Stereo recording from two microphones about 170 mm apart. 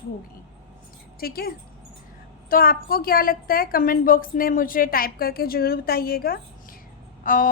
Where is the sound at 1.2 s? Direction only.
65° left (ahead or behind).